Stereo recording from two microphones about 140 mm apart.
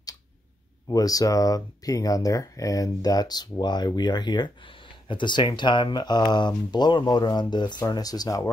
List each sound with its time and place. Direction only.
0.8 s speech: 25° left (ahead or behind)